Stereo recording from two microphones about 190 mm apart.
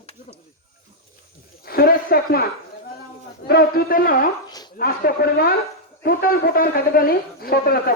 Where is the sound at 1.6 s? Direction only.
50° left (ahead or behind).